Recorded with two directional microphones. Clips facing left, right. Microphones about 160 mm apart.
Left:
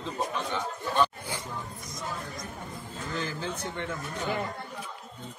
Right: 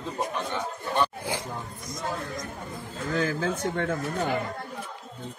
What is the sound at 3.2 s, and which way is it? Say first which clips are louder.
Speech: right 8 dB; 50° right (ahead or behind).